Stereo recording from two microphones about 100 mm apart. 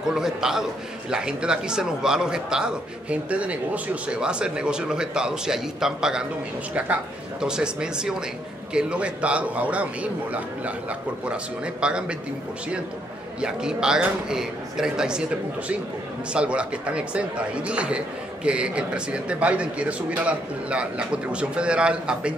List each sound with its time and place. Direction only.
0.1 s a man's voice: 5° right (ahead or behind)
13.4 s speech: 10° right (ahead or behind)
16.3 s speech: 10° right (ahead or behind)